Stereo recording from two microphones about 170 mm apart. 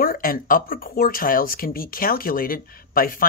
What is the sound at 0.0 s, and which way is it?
Speech, 60° left (ahead or behind).